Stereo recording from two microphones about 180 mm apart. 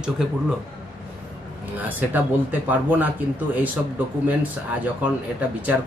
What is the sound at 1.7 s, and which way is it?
Speech, 10° right (ahead or behind).